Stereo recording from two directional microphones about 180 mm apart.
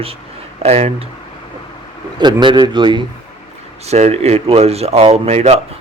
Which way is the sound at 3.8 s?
35° right (ahead or behind).